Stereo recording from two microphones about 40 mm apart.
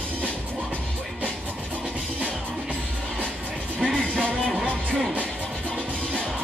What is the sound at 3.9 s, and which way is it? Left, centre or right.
Music, left.